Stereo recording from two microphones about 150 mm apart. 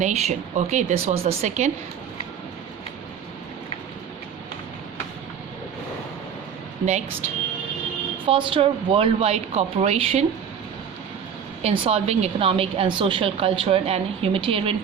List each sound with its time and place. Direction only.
0.0 s speech: 50° right (ahead or behind)
8.3 s speech: 35° right (ahead or behind)
11.6 s speech: 40° right (ahead or behind)